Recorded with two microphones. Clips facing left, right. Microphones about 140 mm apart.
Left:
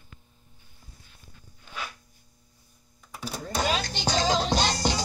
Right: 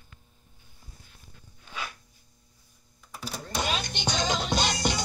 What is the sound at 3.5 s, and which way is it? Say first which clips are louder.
Music: left 3 dB; 40° left (ahead or behind).